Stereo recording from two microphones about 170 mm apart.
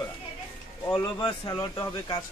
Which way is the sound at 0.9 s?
25° left (ahead or behind).